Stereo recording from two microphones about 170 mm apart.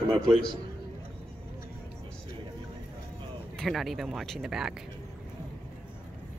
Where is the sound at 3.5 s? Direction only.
Centre (ahead or behind).